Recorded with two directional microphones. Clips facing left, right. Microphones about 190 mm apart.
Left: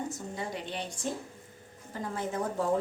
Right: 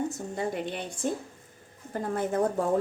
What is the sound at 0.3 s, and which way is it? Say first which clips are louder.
A woman's voice: right 6 dB; 55° right (ahead or behind).